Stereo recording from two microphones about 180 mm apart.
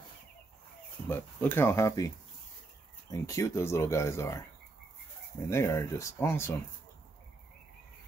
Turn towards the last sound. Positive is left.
turn(degrees=15)  # may be behind; listen again after turning